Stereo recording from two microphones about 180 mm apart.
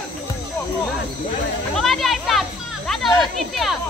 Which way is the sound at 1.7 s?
Centre (ahead or behind).